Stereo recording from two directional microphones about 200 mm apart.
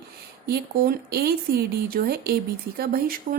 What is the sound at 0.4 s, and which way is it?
A woman's voice, 50° right (ahead or behind).